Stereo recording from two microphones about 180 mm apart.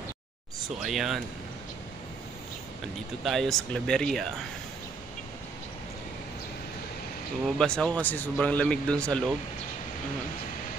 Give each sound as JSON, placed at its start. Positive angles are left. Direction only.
{"t": 0.8, "sound": "speech", "side_deg": 0}
{"t": 3.3, "sound": "speech", "side_deg": 0}
{"t": 7.4, "sound": "speech", "side_deg": 5}